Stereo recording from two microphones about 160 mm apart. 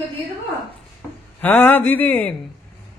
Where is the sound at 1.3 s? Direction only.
10° left (ahead or behind).